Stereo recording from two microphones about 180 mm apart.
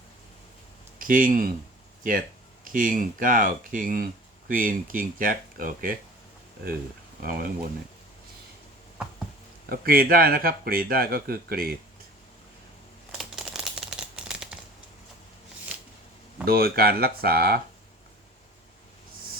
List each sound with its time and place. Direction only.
0.9 s speech: 50° right (ahead or behind)
2.7 s speech: 50° right (ahead or behind)
7.2 s speech: 55° right (ahead or behind)
9.6 s speech: 55° right (ahead or behind)
13.1 s crumpling: centre (ahead or behind)
16.5 s speech: 60° right (ahead or behind)